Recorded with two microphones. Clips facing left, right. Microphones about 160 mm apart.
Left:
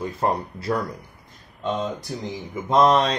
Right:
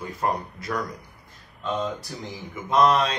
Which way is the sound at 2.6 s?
35° left (ahead or behind).